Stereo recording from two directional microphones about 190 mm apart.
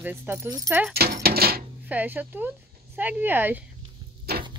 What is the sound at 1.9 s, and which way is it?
Speech, 10° right (ahead or behind).